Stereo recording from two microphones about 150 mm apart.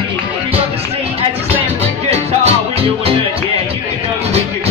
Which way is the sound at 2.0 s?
45° right (ahead or behind).